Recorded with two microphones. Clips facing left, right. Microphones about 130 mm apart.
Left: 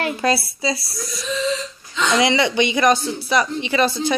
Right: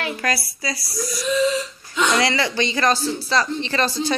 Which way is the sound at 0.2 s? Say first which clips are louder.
Left 5 dB; 25° left (ahead or behind).